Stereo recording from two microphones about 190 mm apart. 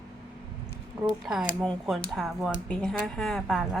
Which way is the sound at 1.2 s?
Centre (ahead or behind).